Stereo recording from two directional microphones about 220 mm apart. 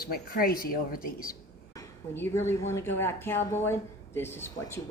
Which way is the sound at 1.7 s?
10° left (ahead or behind).